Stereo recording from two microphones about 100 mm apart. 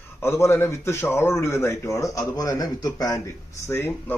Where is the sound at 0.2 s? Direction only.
25° left (ahead or behind).